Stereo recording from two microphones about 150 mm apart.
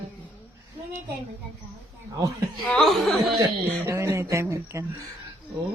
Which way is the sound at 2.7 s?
Centre (ahead or behind).